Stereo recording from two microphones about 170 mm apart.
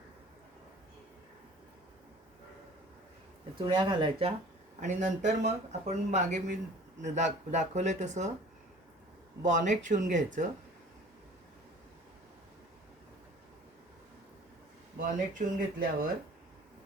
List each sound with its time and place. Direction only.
3.7 s speech: 25° right (ahead or behind)
4.8 s speech: 45° right (ahead or behind)
9.4 s speech: 45° right (ahead or behind)
14.9 s speech: 50° right (ahead or behind)